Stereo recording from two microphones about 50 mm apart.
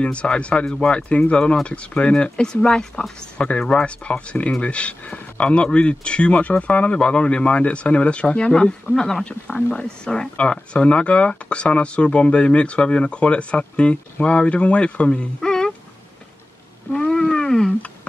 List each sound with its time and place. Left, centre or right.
0.0 s speech: left
3.3 s speech: left
15.1 s a sound: centre
16.9 s wild animals: centre